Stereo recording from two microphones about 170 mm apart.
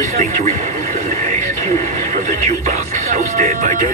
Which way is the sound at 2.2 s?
50° right (ahead or behind).